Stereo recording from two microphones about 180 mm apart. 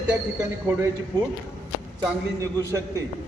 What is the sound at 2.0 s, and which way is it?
Speech, 15° right (ahead or behind).